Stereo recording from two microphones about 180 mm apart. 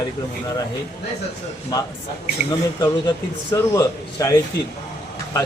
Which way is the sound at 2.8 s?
20° left (ahead or behind).